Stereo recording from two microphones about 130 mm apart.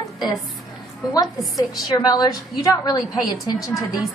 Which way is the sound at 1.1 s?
30° left (ahead or behind).